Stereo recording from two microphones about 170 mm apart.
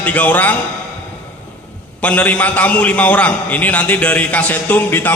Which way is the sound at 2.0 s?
10° left (ahead or behind).